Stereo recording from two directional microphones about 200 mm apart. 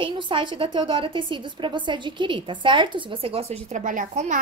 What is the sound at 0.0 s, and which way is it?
A woman's voice, 25° right (ahead or behind).